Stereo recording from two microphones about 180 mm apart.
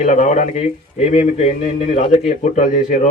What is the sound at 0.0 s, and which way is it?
A man's voice, 40° left (ahead or behind).